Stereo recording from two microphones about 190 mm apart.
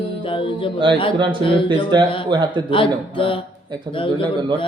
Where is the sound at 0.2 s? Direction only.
25° left (ahead or behind).